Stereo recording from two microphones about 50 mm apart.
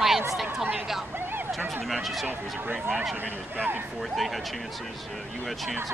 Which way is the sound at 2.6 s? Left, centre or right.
Right.